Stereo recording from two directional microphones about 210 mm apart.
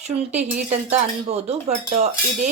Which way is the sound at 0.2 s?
30° right (ahead or behind).